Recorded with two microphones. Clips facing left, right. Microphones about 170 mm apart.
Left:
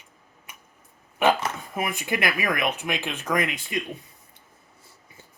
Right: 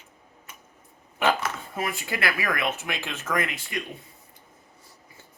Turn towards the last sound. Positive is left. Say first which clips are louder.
# left 3 dB
turn(degrees=20)  # may be behind; listen again after turning